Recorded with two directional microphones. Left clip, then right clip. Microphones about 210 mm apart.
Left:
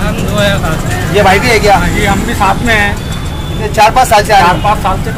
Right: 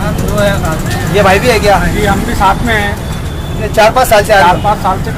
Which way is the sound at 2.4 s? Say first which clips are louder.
Even; 10° left (ahead or behind).